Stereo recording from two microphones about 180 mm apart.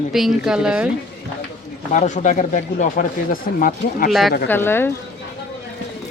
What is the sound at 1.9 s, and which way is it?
Speech, 40° left (ahead or behind).